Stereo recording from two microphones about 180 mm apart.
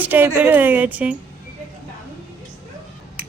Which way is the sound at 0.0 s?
10° right (ahead or behind).